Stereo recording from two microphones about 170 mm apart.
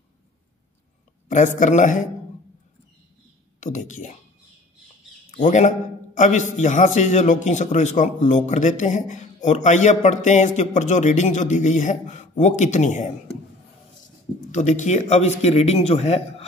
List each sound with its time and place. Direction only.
1.6 s a man's voice: 45° left (ahead or behind)
3.6 s a man's voice: 45° left (ahead or behind)
5.3 s a man's voice: 45° left (ahead or behind)